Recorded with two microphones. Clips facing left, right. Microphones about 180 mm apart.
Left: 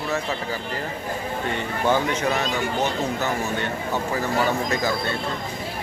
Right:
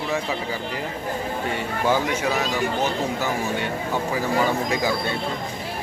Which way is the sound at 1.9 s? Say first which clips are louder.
Left 1 dB; 10° right (ahead or behind).